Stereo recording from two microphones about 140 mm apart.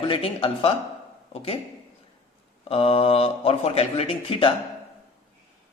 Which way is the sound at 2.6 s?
45° left (ahead or behind).